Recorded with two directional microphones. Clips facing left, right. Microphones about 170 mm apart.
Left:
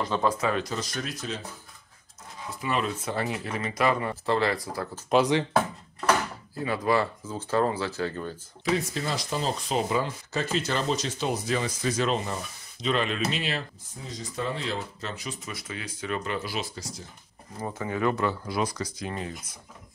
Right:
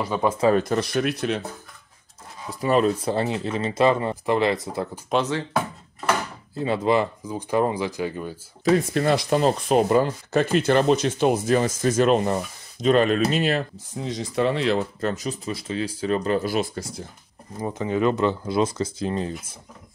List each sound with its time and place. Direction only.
0.0 s speech: 10° right (ahead or behind)
0.3 s speech: 30° right (ahead or behind)
0.6 s speech: 55° right (ahead or behind)
2.6 s speech: 40° right (ahead or behind); by 4.8 s 20° right (ahead or behind)
5.1 s speech: 15° left (ahead or behind)
6.5 s speech: 25° right (ahead or behind)
8.6 s speech: 55° right (ahead or behind)
13.9 s speech: 75° right (ahead or behind)
15.0 s speech: 45° right (ahead or behind)
17.6 s speech: 15° right (ahead or behind)